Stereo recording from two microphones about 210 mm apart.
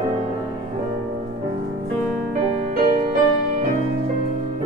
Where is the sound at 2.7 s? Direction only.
40° right (ahead or behind).